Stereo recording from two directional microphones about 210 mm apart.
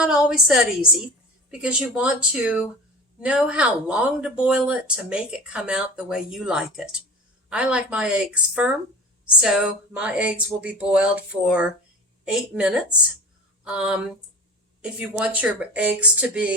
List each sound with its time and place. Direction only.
0.0 s speech: 5° right (ahead or behind)